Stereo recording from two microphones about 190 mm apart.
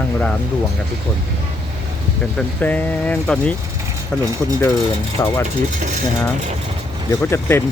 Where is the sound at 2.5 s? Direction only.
10° left (ahead or behind).